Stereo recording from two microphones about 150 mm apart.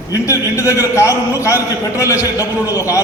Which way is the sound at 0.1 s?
20° left (ahead or behind).